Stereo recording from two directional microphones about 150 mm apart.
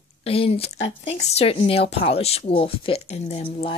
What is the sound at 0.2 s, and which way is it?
Speech, 40° left (ahead or behind).